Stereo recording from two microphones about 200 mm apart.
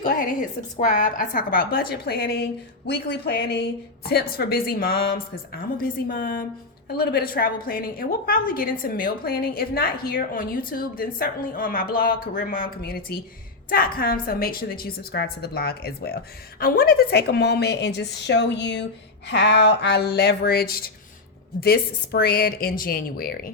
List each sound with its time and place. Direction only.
0.0 s a woman's voice: 40° left (ahead or behind)